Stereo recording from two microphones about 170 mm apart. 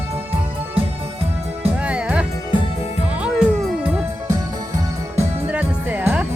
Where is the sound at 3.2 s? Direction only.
5° right (ahead or behind).